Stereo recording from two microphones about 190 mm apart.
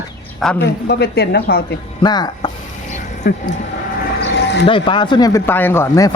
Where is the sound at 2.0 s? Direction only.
20° left (ahead or behind).